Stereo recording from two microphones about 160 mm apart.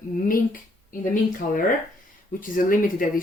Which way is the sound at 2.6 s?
55° left (ahead or behind).